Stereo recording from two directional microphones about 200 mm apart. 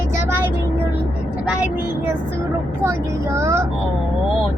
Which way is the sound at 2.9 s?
15° right (ahead or behind).